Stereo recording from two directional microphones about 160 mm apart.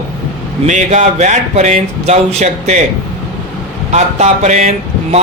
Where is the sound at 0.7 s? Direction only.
50° right (ahead or behind).